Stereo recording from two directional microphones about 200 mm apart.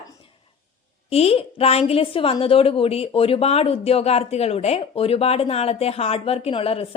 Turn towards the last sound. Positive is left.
turn(degrees=30)  # may be behind; listen again after turning